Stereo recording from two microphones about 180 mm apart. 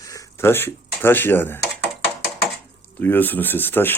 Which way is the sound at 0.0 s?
20° left (ahead or behind).